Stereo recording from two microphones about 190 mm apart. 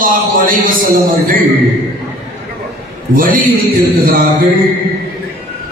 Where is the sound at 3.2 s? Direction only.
45° right (ahead or behind).